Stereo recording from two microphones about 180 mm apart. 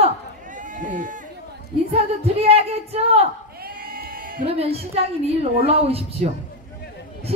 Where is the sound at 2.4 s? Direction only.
35° right (ahead or behind).